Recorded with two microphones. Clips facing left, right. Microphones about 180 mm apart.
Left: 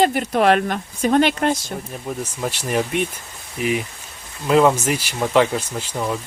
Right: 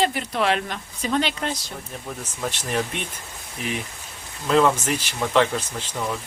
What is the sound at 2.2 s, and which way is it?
Speech, 10° left (ahead or behind).